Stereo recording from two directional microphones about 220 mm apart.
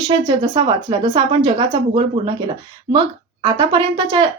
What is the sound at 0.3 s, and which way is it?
Speech, 20° right (ahead or behind).